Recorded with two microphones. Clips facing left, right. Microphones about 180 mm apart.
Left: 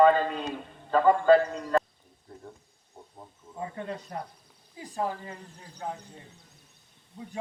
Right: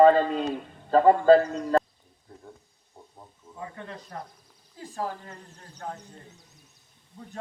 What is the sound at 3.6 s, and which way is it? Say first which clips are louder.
Speech: left 4 dB; 30° left (ahead or behind).